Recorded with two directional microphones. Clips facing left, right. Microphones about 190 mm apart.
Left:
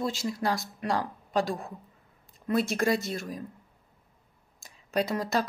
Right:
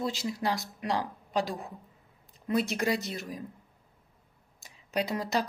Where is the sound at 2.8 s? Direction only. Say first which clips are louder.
Left 3 dB; 45° left (ahead or behind).